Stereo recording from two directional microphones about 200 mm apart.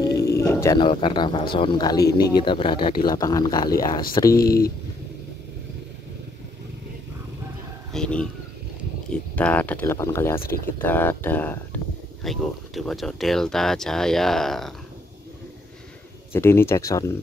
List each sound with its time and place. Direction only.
0.0 s speech: 15° left (ahead or behind)
2.8 s speech: 45° left (ahead or behind)
3.1 s speech: 20° left (ahead or behind)
4.4 s speech: 50° left (ahead or behind)
7.9 s bird: 5° left (ahead or behind)
9.1 s speech: 5° left (ahead or behind)
16.3 s speech: 10° left (ahead or behind)